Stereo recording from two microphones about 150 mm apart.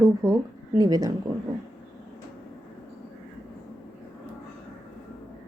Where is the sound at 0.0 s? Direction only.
20° right (ahead or behind).